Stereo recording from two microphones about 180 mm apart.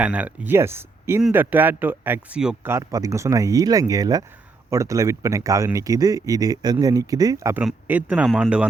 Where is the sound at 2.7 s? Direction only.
20° right (ahead or behind).